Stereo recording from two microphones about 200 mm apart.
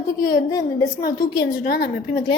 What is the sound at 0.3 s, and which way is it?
A woman's voice, 15° left (ahead or behind).